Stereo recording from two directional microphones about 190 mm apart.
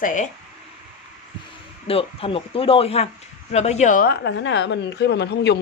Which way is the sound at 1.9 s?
30° left (ahead or behind).